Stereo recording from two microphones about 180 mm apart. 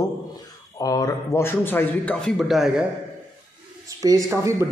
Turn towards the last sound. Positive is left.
turn(degrees=-15)  # may be behind; listen again after turning